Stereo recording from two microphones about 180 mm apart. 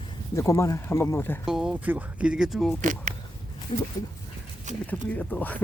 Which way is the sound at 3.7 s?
30° left (ahead or behind).